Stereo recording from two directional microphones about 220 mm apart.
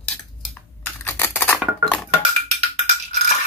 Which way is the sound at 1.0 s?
10° left (ahead or behind).